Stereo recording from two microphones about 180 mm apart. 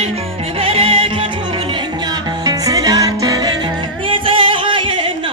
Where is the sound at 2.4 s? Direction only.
20° right (ahead or behind).